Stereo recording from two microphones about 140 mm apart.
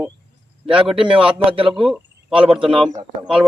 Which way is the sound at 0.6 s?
5° right (ahead or behind).